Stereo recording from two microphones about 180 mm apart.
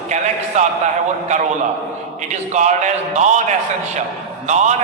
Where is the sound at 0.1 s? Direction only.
45° right (ahead or behind).